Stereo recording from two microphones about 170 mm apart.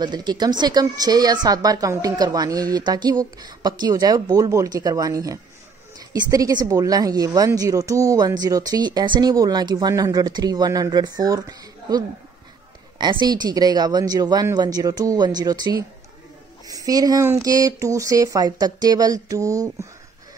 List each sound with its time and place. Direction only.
0.0 s a woman's voice: 25° right (ahead or behind)